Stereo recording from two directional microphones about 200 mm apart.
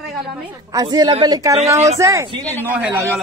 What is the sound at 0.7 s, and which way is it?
A woman's voice, 20° right (ahead or behind).